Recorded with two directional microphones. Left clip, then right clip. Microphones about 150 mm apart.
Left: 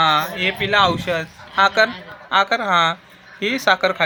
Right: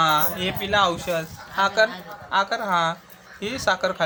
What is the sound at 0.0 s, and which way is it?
A man's voice, 30° left (ahead or behind).